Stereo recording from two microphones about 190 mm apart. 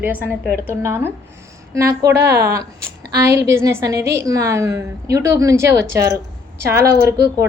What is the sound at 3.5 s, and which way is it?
A woman's voice, 15° right (ahead or behind).